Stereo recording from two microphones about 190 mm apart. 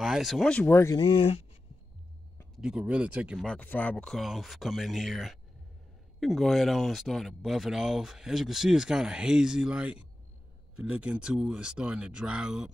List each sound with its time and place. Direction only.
0.0 s speech: centre (ahead or behind); by 1.0 s 15° left (ahead or behind)
1.2 s speech: 30° left (ahead or behind)
2.5 s speech: 5° right (ahead or behind)